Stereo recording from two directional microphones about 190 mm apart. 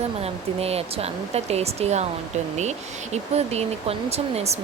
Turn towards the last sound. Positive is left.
turn(degrees=-35)  # may be behind; listen again after turning